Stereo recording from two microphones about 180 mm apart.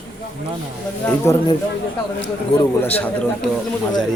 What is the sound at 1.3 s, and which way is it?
Speech, 15° left (ahead or behind).